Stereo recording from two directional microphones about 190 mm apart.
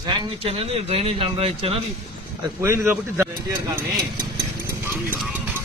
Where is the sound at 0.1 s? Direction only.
25° right (ahead or behind).